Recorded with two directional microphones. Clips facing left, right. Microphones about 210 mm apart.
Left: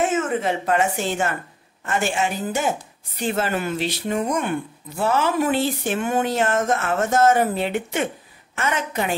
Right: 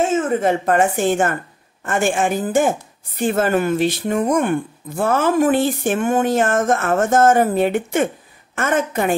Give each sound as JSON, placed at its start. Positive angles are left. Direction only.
{"t": 0.0, "sound": "a woman's voice", "side_deg": -30}
{"t": 0.3, "sound": "speech", "side_deg": -50}